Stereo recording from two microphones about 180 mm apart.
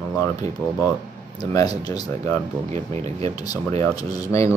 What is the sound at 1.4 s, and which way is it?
Speech, 20° left (ahead or behind).